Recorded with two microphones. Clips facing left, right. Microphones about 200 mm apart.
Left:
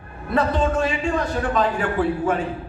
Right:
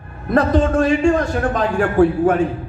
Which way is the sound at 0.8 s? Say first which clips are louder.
Right 7 dB; 45° right (ahead or behind).